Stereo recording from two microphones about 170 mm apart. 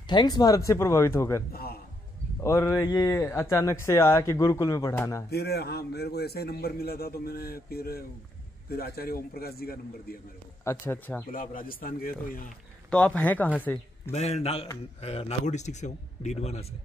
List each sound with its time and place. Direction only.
0.1 s speech: 25° left (ahead or behind)
1.5 s music: 65° left (ahead or behind)
2.4 s speech: 15° left (ahead or behind)
5.3 s a man's voice: 70° left (ahead or behind)
10.6 s speech: 15° left (ahead or behind)
11.3 s a man's voice: 55° left (ahead or behind)
12.9 s speech: 10° left (ahead or behind)
14.1 s a man's voice: 40° left (ahead or behind)